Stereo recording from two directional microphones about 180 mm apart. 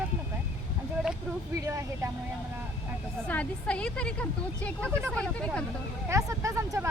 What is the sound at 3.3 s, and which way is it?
Speech, 5° left (ahead or behind).